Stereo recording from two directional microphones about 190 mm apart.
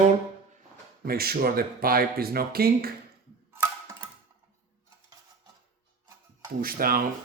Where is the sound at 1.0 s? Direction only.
55° right (ahead or behind).